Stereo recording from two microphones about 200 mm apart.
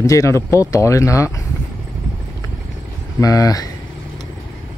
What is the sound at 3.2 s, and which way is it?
Speech, 15° left (ahead or behind).